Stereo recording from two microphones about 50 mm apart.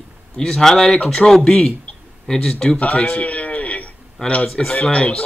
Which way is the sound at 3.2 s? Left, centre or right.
Left.